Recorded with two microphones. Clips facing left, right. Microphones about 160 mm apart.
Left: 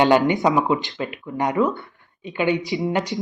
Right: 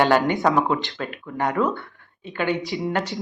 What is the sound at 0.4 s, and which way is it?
Speech, 5° left (ahead or behind).